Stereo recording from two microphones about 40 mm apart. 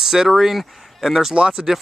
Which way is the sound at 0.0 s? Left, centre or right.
Centre.